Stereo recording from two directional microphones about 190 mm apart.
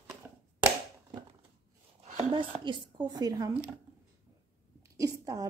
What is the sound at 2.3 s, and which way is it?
Speech, 25° right (ahead or behind).